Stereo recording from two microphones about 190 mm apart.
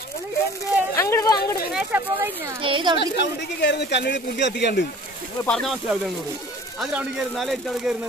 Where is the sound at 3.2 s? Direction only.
65° left (ahead or behind).